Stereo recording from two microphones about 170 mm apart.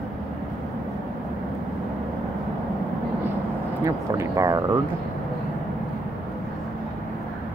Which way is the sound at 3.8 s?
20° right (ahead or behind).